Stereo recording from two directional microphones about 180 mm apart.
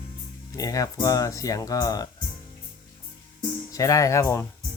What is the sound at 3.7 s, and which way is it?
Speech, 20° left (ahead or behind).